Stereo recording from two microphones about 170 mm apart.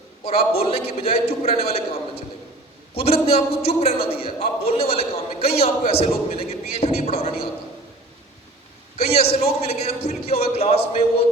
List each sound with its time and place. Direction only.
0.3 s a man's voice: 35° left (ahead or behind)
9.0 s a man's voice: 35° left (ahead or behind)